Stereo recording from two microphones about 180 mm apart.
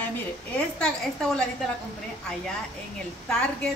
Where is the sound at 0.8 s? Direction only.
5° left (ahead or behind).